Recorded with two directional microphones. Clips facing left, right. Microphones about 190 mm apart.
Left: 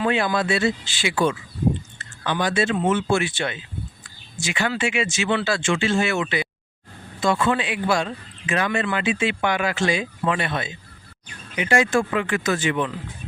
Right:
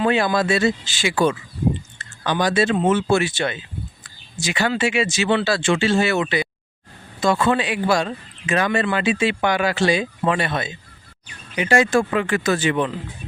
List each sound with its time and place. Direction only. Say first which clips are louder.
0.0 s speech: right 3 dB; 35° right (ahead or behind)